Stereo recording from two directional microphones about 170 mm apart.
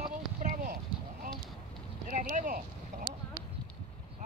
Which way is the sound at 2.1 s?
50° right (ahead or behind).